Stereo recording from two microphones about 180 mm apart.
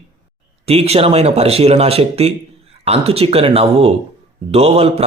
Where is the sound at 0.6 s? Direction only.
35° right (ahead or behind).